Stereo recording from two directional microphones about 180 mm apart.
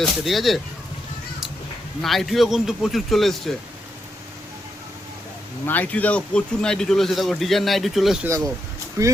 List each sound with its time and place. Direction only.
0.0 s a man's voice: centre (ahead or behind)
2.0 s a man's voice: centre (ahead or behind)
5.6 s a man's voice: 10° left (ahead or behind)
9.0 s speech: 15° right (ahead or behind)